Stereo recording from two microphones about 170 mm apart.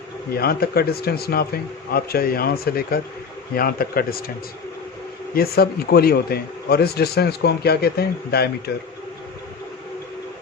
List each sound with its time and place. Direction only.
0.3 s speech: 65° left (ahead or behind)
5.3 s speech: 65° left (ahead or behind)